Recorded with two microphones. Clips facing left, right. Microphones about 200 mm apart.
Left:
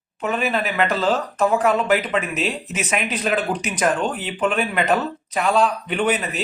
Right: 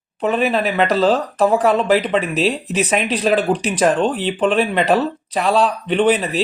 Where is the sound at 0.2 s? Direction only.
35° right (ahead or behind).